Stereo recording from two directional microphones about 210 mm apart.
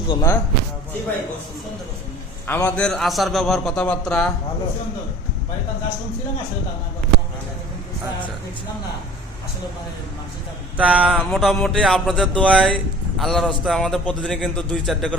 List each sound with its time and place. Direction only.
0.1 s speech: 15° left (ahead or behind)
2.5 s speech: 10° left (ahead or behind)
10.8 s speech: 5° right (ahead or behind)